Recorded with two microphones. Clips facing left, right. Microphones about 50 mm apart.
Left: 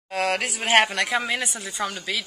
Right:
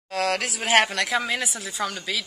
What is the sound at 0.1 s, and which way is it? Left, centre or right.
A woman's voice, centre.